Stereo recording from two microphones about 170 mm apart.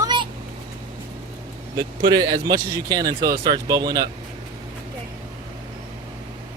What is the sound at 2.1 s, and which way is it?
Speech, 25° right (ahead or behind).